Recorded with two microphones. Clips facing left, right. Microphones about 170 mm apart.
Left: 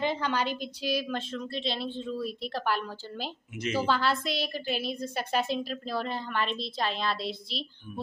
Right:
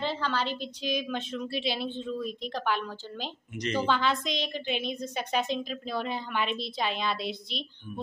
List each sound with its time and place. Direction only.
0.0 s a woman's voice: 15° left (ahead or behind)
1.3 s a woman's voice: 5° right (ahead or behind)